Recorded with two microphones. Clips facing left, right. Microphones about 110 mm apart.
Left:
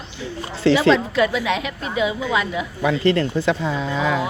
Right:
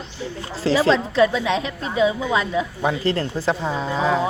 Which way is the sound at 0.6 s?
35° right (ahead or behind).